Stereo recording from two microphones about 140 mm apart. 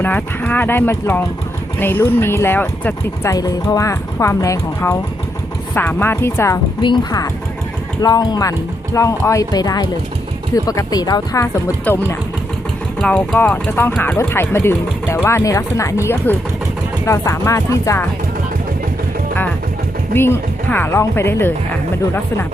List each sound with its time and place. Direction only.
0.0 s speech: 10° left (ahead or behind)
3.3 s speech: 25° left (ahead or behind)
6.8 s a woman's voice: 30° left (ahead or behind)
11.9 s speech: 10° left (ahead or behind)
20.1 s speech: 15° left (ahead or behind)